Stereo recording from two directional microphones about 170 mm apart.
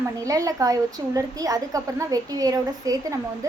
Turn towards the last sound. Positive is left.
turn(degrees=-20)  # may be behind; listen again after turning